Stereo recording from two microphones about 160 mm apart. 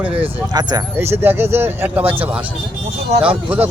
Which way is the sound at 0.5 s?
25° right (ahead or behind).